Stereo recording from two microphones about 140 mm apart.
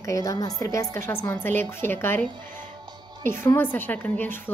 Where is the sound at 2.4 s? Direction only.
70° right (ahead or behind).